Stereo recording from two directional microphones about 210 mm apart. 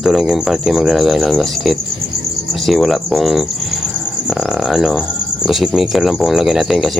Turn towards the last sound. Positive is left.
turn(degrees=0)  # may be behind; listen again after turning